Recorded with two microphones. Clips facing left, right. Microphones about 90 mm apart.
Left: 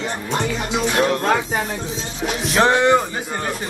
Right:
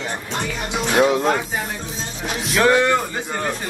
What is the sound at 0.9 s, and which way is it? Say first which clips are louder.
Speech: right 4 dB; 10° right (ahead or behind).